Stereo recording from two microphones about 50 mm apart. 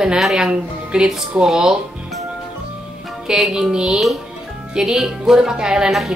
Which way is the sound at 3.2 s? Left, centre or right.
Centre.